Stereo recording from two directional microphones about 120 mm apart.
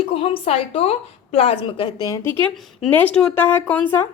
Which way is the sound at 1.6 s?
40° left (ahead or behind).